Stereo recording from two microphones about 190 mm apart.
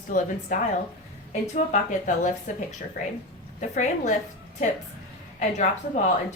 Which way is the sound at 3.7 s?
40° left (ahead or behind).